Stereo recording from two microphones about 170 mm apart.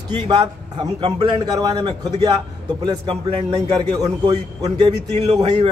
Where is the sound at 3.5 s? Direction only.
25° right (ahead or behind).